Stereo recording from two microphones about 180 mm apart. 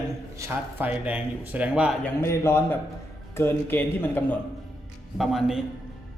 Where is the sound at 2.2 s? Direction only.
15° left (ahead or behind).